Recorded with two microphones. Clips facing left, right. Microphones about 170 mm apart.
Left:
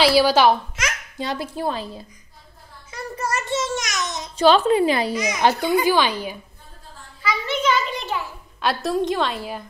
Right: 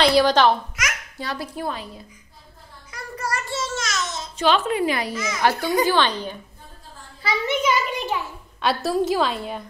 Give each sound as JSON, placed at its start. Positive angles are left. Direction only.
{"t": 0.0, "sound": "a child's voice", "side_deg": 5}
{"t": 1.1, "sound": "a woman's voice", "side_deg": 20}
{"t": 2.9, "sound": "child singing", "side_deg": 25}
{"t": 4.4, "sound": "a woman's voice", "side_deg": 30}
{"t": 5.1, "sound": "a child's voice", "side_deg": 15}
{"t": 7.4, "sound": "a child's voice", "side_deg": -15}
{"t": 8.5, "sound": "a woman's voice", "side_deg": 0}